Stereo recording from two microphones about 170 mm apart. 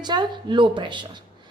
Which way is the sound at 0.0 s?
25° right (ahead or behind).